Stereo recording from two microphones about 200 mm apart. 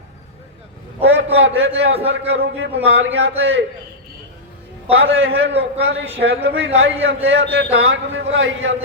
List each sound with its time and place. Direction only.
1.0 s a sound: 70° right (ahead or behind)
2.4 s a man's voice: 55° right (ahead or behind)
4.9 s a man's voice: 70° right (ahead or behind)
5.8 s a man's voice: 65° right (ahead or behind)